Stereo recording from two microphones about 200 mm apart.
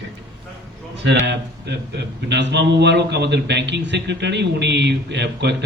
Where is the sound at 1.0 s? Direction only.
60° right (ahead or behind).